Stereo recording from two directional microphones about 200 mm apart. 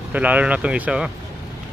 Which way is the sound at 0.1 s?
5° right (ahead or behind).